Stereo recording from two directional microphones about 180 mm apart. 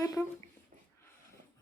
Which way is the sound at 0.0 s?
20° left (ahead or behind).